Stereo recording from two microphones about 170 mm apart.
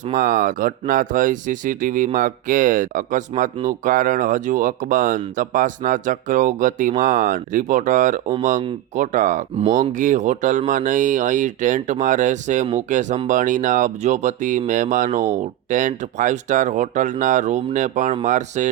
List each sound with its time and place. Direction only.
0.1 s speech: 55° right (ahead or behind)